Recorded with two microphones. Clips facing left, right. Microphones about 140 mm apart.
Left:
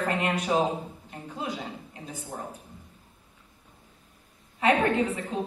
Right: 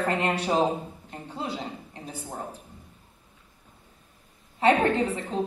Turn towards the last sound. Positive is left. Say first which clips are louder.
# right 1 dB
turn(degrees=-30)  # may be behind; listen again after turning